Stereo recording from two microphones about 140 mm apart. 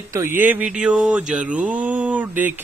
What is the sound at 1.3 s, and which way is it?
A man's voice, 10° right (ahead or behind).